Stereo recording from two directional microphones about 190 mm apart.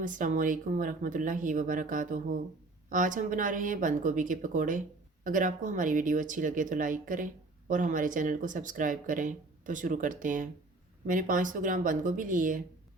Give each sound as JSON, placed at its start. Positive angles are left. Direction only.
{"t": 0.0, "sound": "speech", "side_deg": -45}